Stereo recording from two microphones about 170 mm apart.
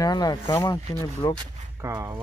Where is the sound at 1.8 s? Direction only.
15° right (ahead or behind).